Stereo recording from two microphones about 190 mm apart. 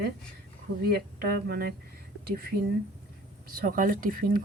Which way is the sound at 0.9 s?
55° right (ahead or behind).